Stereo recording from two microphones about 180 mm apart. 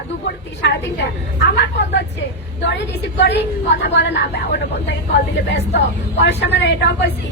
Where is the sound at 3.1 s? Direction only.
70° left (ahead or behind).